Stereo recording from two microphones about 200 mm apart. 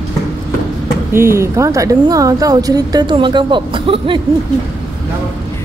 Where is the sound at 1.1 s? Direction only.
10° right (ahead or behind).